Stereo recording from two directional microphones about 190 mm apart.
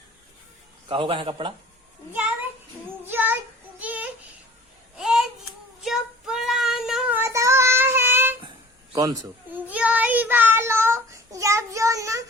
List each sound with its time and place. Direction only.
0.9 s a man's voice: 30° right (ahead or behind)
3.1 s child singing: 10° right (ahead or behind)
3.8 s a sound: 10° right (ahead or behind)
5.8 s child singing: centre (ahead or behind)
7.2 s child singing: 15° right (ahead or behind)